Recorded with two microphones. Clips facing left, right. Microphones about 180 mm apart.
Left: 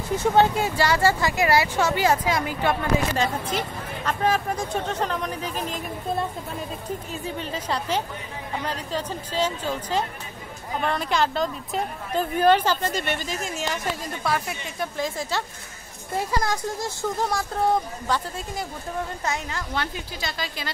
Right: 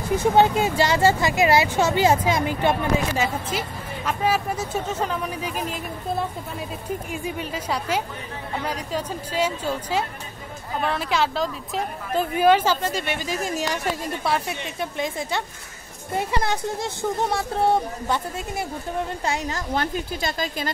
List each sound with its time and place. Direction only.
0.2 s speech: 20° right (ahead or behind)
3.2 s speech: 5° right (ahead or behind)
13.3 s speech: 40° right (ahead or behind)
14.2 s speech: 25° right (ahead or behind)
19.2 s a woman's voice: 35° right (ahead or behind)